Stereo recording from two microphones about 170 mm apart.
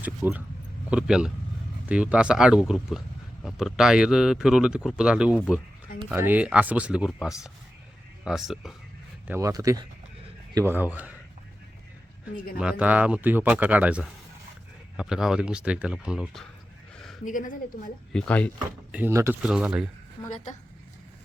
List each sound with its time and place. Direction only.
0.0 s speech: 10° right (ahead or behind)
9.2 s speech: 15° right (ahead or behind)
10.7 s speech: 10° right (ahead or behind)
12.5 s speech: 5° right (ahead or behind)
17.2 s speech: 50° left (ahead or behind)
18.1 s speech: 5° left (ahead or behind)
18.9 s speech: 10° right (ahead or behind)